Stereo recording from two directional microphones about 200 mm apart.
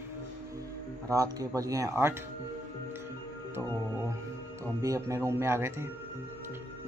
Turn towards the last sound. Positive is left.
turn(degrees=-15)  # may be behind; listen again after turning